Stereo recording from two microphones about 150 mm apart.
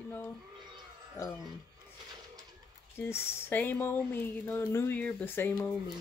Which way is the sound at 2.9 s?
15° left (ahead or behind).